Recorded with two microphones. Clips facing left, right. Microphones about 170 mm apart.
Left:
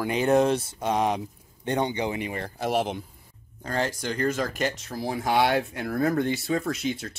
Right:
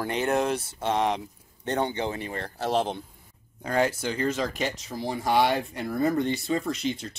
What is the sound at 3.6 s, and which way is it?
Speech, 10° right (ahead or behind).